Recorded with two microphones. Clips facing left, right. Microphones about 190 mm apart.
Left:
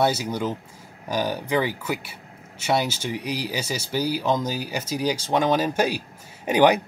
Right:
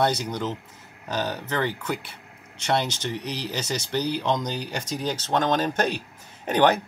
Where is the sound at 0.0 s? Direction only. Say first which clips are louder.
Left 2 dB; 5° left (ahead or behind).